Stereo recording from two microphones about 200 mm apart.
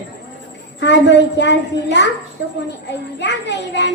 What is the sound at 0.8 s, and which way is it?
A child's voice, 60° left (ahead or behind).